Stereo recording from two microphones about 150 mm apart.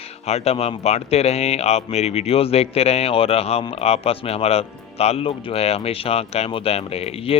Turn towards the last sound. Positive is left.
turn(degrees=40)  # may be behind; listen again after turning